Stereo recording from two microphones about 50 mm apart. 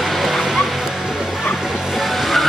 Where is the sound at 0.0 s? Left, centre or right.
Centre.